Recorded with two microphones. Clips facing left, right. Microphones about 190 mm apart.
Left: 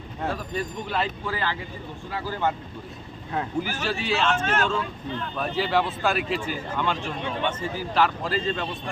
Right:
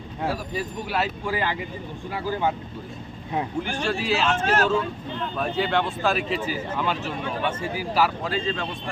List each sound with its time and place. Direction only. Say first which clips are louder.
0.2 s speech: right 1 dB; 5° right (ahead or behind)
3.6 s speech: right 2 dB; 5° left (ahead or behind)
4.4 s speech: right 3 dB; 35° right (ahead or behind)
5.4 s speech: even; centre (ahead or behind)